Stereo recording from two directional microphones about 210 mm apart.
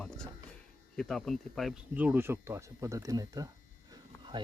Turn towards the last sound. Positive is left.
turn(degrees=-15)  # may be behind; listen again after turning